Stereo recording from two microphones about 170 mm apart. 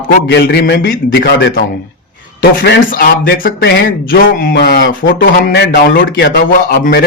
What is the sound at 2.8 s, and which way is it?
Speech, 55° left (ahead or behind).